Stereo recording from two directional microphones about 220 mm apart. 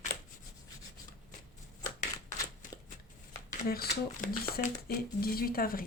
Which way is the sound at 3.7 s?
45° left (ahead or behind).